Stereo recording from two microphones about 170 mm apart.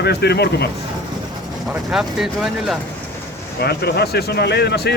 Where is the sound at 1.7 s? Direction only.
5° right (ahead or behind).